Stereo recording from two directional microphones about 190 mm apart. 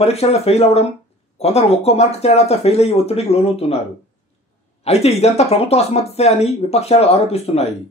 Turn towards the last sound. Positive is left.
turn(degrees=35)  # may be behind; listen again after turning